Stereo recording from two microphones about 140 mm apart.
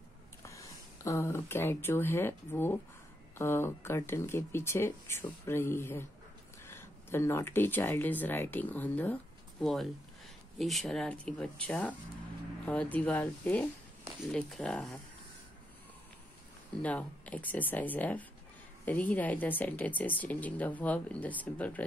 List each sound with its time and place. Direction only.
0.4 s a woman's voice: 20° left (ahead or behind); by 15.0 s 5° left (ahead or behind)
16.8 s a woman's voice: 10° left (ahead or behind)